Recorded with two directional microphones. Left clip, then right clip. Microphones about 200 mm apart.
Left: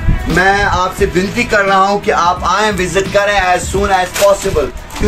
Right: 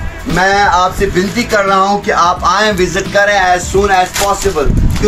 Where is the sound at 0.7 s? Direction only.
25° left (ahead or behind).